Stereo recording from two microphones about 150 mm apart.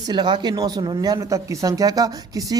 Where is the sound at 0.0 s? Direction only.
30° right (ahead or behind).